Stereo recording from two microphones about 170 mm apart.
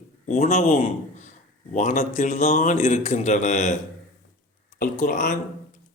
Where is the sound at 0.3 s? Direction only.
40° left (ahead or behind).